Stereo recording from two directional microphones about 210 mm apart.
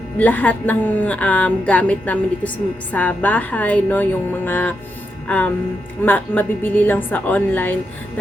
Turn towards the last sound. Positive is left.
turn(degrees=10)  # may be behind; listen again after turning